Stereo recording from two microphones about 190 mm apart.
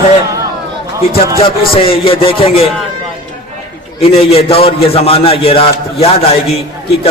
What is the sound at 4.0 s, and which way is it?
A man's voice, 30° left (ahead or behind).